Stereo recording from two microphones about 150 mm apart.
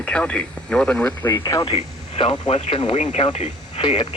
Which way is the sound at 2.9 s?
55° left (ahead or behind).